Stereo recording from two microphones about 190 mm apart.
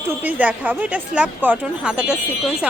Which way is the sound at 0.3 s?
10° right (ahead or behind).